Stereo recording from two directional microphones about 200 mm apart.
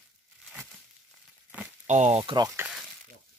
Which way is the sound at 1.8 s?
35° right (ahead or behind).